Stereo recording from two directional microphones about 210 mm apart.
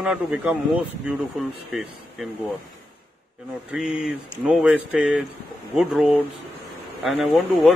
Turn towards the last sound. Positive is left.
turn(degrees=0)  # may be behind; listen again after turning